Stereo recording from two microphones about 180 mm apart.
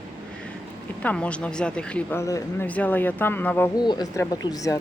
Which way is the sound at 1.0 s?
5° left (ahead or behind).